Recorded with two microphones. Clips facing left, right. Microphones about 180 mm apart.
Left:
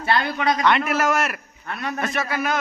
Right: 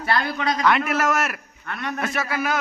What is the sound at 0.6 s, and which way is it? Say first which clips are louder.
Speech: right 1 dB; centre (ahead or behind).